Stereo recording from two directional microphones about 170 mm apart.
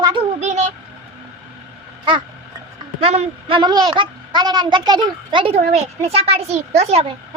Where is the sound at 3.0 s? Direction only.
35° right (ahead or behind).